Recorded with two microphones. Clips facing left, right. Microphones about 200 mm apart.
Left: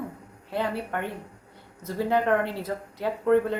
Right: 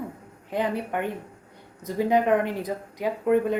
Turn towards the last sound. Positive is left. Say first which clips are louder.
# even
turn(degrees=-15)  # may be behind; listen again after turning